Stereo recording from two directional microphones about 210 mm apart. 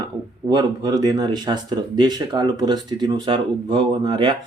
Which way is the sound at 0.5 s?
20° right (ahead or behind).